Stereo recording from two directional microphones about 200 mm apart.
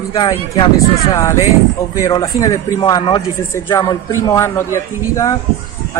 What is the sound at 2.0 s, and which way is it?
A man's voice, 15° left (ahead or behind).